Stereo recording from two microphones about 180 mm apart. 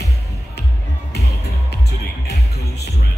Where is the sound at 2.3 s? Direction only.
65° left (ahead or behind).